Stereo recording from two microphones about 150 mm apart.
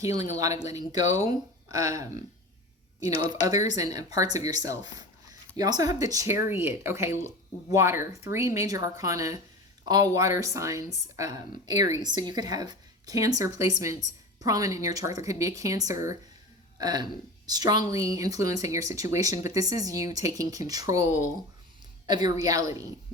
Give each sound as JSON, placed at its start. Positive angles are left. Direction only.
{"t": 0.0, "sound": "speech", "side_deg": -25}